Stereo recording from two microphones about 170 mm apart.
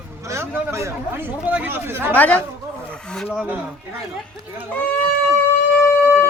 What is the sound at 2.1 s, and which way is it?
Speech, 10° left (ahead or behind).